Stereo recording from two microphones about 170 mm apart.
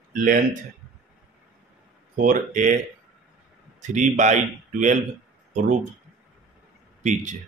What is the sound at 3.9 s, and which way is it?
Speech, 45° right (ahead or behind).